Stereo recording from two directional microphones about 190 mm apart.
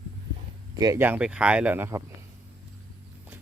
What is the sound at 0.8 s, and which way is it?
Speech, 15° right (ahead or behind).